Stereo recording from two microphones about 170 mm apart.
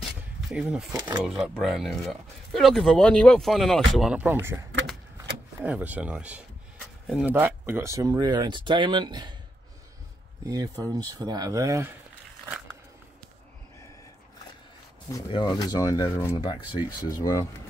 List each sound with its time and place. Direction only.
0.5 s speech: 5° right (ahead or behind); by 9.3 s 25° right (ahead or behind)
10.5 s speech: 20° right (ahead or behind)
15.2 s speech: 25° left (ahead or behind)